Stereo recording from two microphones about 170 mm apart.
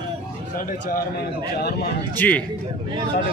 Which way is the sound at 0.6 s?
55° left (ahead or behind).